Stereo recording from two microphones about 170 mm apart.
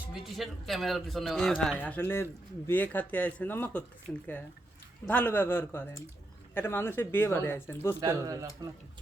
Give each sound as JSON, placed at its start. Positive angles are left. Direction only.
{"t": 0.1, "sound": "speech", "side_deg": 0}
{"t": 8.0, "sound": "speech", "side_deg": -20}